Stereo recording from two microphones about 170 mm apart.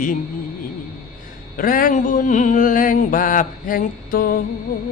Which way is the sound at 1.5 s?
55° left (ahead or behind).